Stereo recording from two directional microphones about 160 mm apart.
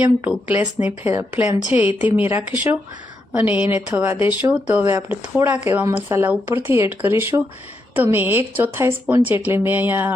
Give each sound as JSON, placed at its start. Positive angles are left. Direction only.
{"t": 0.0, "sound": "speech", "side_deg": -10}